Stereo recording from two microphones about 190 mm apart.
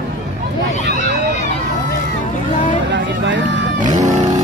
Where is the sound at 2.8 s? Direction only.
70° right (ahead or behind).